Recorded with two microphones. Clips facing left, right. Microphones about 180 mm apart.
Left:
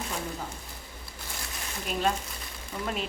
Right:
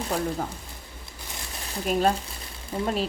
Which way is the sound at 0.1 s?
35° right (ahead or behind).